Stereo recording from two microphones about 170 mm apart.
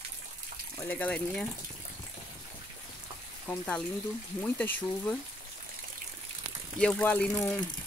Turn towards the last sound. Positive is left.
turn(degrees=10)  # may be behind; listen again after turning